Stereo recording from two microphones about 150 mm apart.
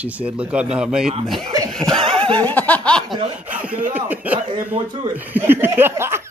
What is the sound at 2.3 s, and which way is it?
Snicker, 10° left (ahead or behind).